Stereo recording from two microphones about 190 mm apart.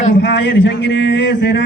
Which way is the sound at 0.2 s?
70° left (ahead or behind).